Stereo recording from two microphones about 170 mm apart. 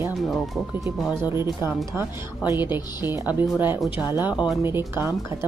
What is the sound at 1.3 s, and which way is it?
A woman's voice, 15° right (ahead or behind).